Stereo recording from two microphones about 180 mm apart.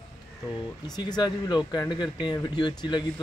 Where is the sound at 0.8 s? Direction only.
20° left (ahead or behind).